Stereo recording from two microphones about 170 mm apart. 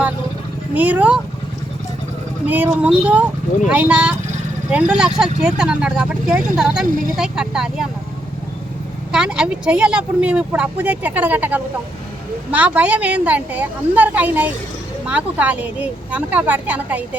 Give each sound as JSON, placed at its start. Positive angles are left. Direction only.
{"t": 0.7, "sound": "speech", "side_deg": -10}
{"t": 2.5, "sound": "speech", "side_deg": -10}
{"t": 9.1, "sound": "speech", "side_deg": -5}